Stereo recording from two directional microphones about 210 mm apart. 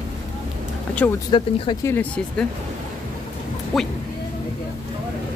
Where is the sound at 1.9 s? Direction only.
5° left (ahead or behind).